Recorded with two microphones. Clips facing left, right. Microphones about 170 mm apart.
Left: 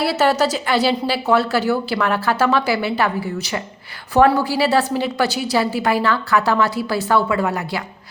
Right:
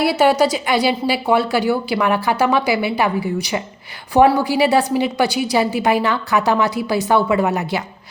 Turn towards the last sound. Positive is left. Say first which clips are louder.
# right 3 dB
turn(degrees=-20)  # may be behind; listen again after turning